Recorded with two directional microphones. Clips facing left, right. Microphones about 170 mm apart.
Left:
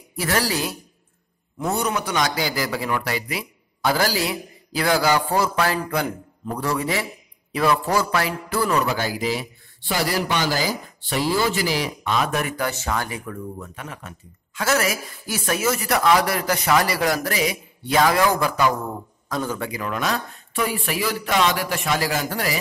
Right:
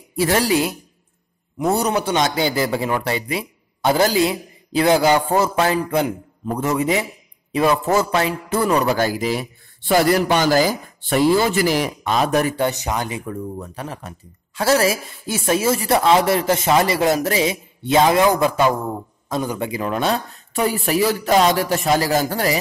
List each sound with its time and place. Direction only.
0.1 s a man's voice: 25° right (ahead or behind)
1.7 s a man's voice: 35° right (ahead or behind)
8.8 s a man's voice: 45° right (ahead or behind); by 13.4 s 20° right (ahead or behind)
13.6 s a man's voice: 35° right (ahead or behind)